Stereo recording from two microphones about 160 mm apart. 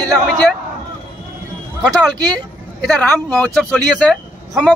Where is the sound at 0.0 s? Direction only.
25° right (ahead or behind).